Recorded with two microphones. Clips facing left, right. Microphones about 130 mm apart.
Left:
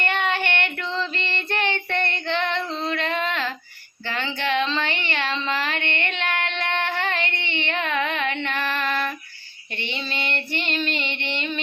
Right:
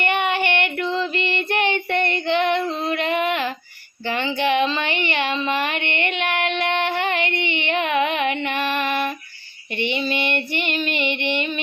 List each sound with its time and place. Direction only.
0.0 s child singing: 15° right (ahead or behind)
4.0 s a sound: 15° right (ahead or behind)
9.7 s female singing: 15° right (ahead or behind)